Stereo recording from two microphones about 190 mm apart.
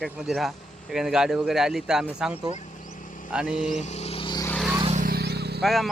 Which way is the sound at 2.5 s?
40° left (ahead or behind).